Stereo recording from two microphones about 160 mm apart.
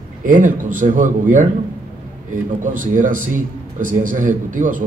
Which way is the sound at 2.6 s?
55° right (ahead or behind).